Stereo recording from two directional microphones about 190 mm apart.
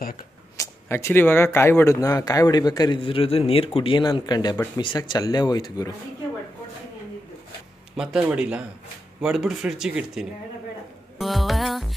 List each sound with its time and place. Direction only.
0.6 s speech: 15° left (ahead or behind)
7.9 s speech: 5° right (ahead or behind)